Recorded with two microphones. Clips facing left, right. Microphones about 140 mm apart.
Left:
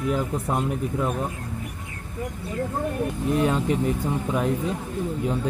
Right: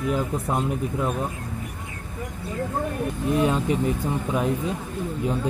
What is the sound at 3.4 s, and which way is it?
Speech, 15° right (ahead or behind).